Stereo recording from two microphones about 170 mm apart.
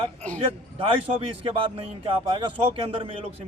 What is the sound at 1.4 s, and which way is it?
A man's voice, 30° right (ahead or behind).